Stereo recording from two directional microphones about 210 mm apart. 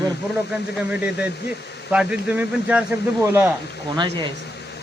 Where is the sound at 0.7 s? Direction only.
5° right (ahead or behind).